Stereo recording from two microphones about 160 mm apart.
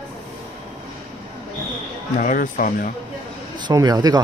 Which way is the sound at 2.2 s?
60° left (ahead or behind).